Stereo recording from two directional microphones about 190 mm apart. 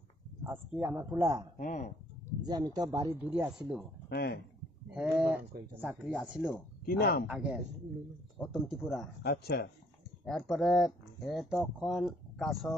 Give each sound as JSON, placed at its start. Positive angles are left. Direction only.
{"t": 0.4, "sound": "speech", "side_deg": -10}
{"t": 1.6, "sound": "speech", "side_deg": 40}
{"t": 2.4, "sound": "speech", "side_deg": -20}
{"t": 3.3, "sound": "speech", "side_deg": -5}
{"t": 4.1, "sound": "speech", "side_deg": 55}
{"t": 4.9, "sound": "speech", "side_deg": -5}
{"t": 6.9, "sound": "speech", "side_deg": 55}
{"t": 7.2, "sound": "speech", "side_deg": -5}
{"t": 9.2, "sound": "speech", "side_deg": 55}
{"t": 10.2, "sound": "speech", "side_deg": 0}